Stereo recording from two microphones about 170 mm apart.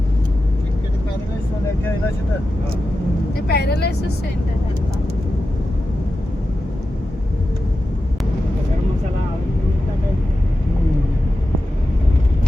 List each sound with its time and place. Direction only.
3.4 s speech: 70° left (ahead or behind)